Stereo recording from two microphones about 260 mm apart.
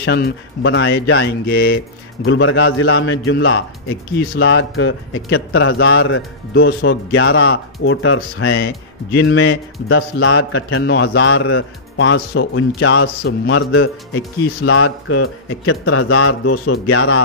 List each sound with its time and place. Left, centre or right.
0.0 s a man's voice: left